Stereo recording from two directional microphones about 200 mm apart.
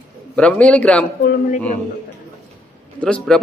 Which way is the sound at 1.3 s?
40° left (ahead or behind).